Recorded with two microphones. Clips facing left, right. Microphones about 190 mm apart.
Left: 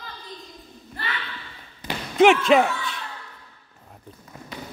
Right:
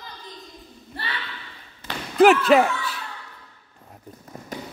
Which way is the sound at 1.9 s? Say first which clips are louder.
Left 2 dB; 15° left (ahead or behind).